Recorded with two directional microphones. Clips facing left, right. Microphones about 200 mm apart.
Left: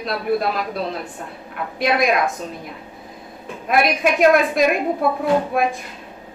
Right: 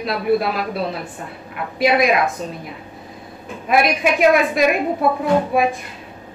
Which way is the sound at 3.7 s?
Centre (ahead or behind).